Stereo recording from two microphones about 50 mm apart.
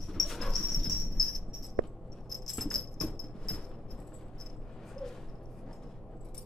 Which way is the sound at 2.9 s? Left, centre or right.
Centre.